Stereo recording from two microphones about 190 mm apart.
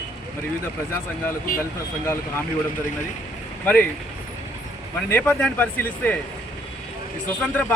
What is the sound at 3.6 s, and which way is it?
Speech, 5° left (ahead or behind).